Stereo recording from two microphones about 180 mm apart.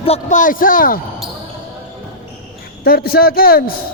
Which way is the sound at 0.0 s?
40° left (ahead or behind).